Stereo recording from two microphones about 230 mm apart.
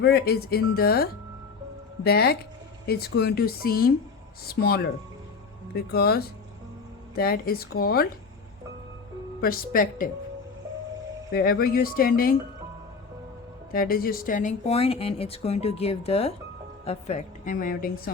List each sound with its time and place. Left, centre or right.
0.0 s speech: left
2.0 s a woman's voice: left
9.4 s a woman's voice: left
11.3 s a woman's voice: left
13.7 s a woman's voice: left